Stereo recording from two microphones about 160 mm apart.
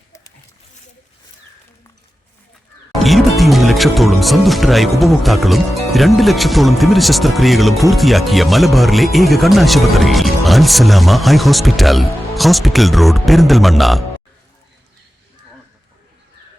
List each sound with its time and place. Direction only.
3.0 s speech: centre (ahead or behind)